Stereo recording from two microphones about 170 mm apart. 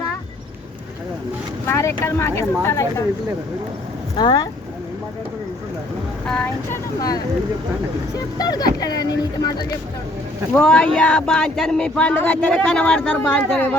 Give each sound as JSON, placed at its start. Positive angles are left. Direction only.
{"t": 1.6, "sound": "speech", "side_deg": 15}
{"t": 4.2, "sound": "speech", "side_deg": 25}
{"t": 6.2, "sound": "speech", "side_deg": 5}
{"t": 8.4, "sound": "speech", "side_deg": 25}
{"t": 10.5, "sound": "speech", "side_deg": 5}